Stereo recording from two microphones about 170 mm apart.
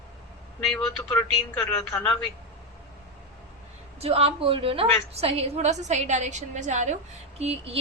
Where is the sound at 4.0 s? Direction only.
35° right (ahead or behind).